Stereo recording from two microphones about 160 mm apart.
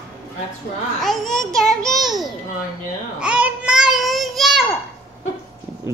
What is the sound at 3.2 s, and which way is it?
Child singing, 5° right (ahead or behind).